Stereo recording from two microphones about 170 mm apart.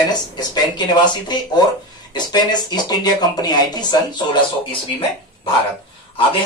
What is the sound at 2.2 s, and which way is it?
Speech, 25° left (ahead or behind).